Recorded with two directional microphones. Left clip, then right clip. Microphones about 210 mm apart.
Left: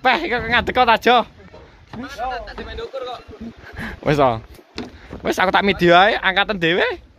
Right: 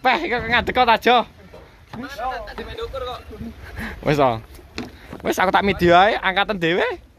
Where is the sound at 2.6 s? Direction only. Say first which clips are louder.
Even; 20° right (ahead or behind).